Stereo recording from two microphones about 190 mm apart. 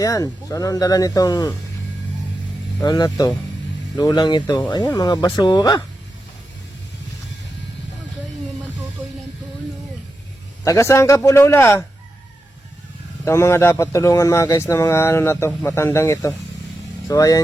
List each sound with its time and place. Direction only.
0.0 s speech: 20° left (ahead or behind)
2.8 s speech: 20° left (ahead or behind)
10.6 s speech: 15° left (ahead or behind)
13.2 s speech: 15° left (ahead or behind)